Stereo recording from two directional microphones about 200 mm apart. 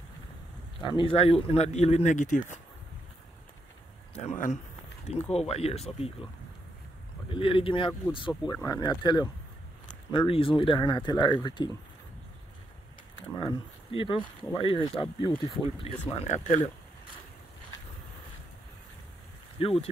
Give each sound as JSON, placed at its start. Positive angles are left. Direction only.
{"t": 0.8, "sound": "speech", "side_deg": 25}
{"t": 4.1, "sound": "speech", "side_deg": 35}
{"t": 7.2, "sound": "speech", "side_deg": 25}
{"t": 13.4, "sound": "speech", "side_deg": 25}
{"t": 19.6, "sound": "speech", "side_deg": 30}